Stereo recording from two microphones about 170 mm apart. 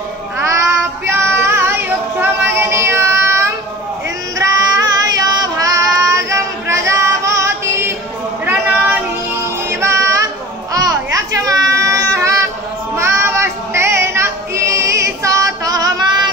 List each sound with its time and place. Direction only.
0.4 s child singing: 15° right (ahead or behind)
8.5 s music: 10° right (ahead or behind)
10.7 s a sound: 20° right (ahead or behind)
12.9 s child singing: 15° right (ahead or behind)